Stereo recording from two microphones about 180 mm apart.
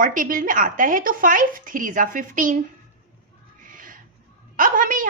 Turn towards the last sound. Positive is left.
turn(degrees=-50)  # may be behind; listen again after turning